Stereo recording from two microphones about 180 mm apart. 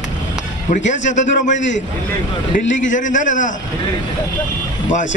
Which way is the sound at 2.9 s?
45° left (ahead or behind).